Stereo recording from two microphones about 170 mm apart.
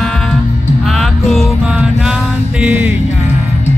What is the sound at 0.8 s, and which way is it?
Music, centre (ahead or behind).